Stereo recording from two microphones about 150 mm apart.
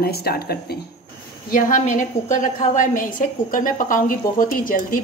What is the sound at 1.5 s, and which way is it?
A woman's voice, 60° left (ahead or behind).